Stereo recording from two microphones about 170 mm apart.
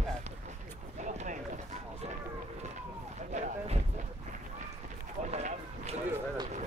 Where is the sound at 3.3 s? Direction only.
40° right (ahead or behind).